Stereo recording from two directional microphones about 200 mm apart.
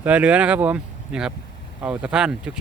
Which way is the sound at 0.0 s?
5° right (ahead or behind).